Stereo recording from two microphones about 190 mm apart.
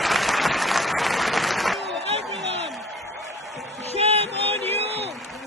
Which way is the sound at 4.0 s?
35° right (ahead or behind).